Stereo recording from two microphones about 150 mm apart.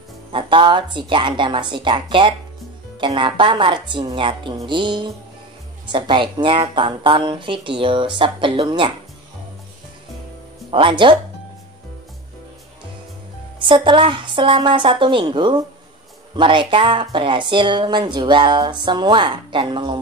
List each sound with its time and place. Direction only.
0.3 s a woman's voice: 35° right (ahead or behind)
10.7 s a woman's voice: 35° right (ahead or behind)
13.6 s a woman's voice: 35° right (ahead or behind)